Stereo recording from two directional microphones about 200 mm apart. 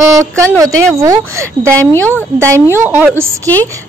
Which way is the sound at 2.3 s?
15° right (ahead or behind).